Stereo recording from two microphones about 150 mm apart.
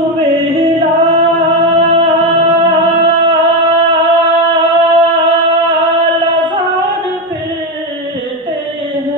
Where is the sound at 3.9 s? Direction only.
30° right (ahead or behind).